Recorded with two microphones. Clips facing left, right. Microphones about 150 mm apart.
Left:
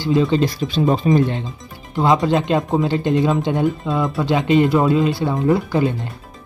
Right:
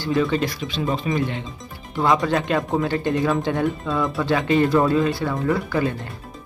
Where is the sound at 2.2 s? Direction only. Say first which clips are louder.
Left 4 dB; 25° left (ahead or behind).